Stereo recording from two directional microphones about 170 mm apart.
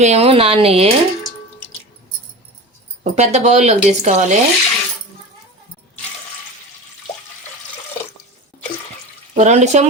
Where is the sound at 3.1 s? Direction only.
40° right (ahead or behind).